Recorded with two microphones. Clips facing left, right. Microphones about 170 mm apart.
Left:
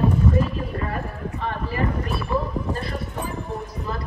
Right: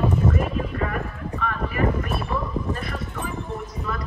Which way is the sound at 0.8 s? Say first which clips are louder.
Even; 30° left (ahead or behind).